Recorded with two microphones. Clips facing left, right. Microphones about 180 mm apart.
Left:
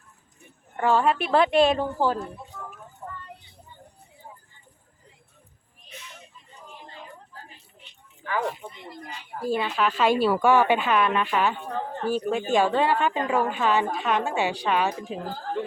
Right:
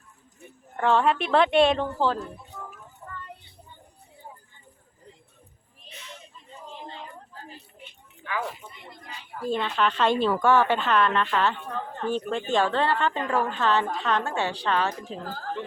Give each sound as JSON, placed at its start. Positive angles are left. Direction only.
{"t": 0.8, "sound": "speech", "side_deg": 5}
{"t": 8.2, "sound": "speech", "side_deg": 45}
{"t": 9.5, "sound": "a woman's voice", "side_deg": 5}